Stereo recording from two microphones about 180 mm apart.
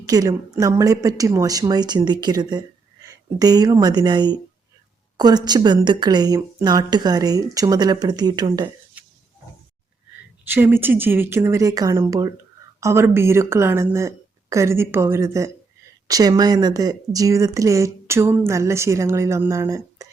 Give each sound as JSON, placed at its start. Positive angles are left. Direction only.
{"t": 0.1, "sound": "a woman's voice", "side_deg": -20}
{"t": 10.4, "sound": "speech", "side_deg": -10}